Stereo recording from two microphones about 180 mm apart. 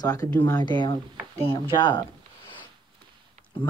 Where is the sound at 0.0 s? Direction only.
20° left (ahead or behind).